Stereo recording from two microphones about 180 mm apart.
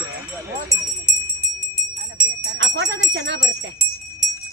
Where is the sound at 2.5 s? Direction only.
80° right.